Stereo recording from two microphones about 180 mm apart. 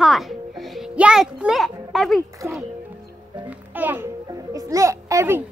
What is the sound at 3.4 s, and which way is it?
Music, 10° right (ahead or behind).